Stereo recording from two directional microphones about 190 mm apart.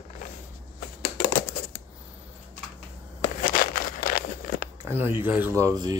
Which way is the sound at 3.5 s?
50° left (ahead or behind).